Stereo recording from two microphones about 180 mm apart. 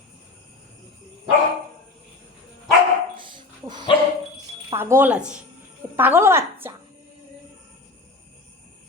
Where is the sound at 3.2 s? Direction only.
25° right (ahead or behind).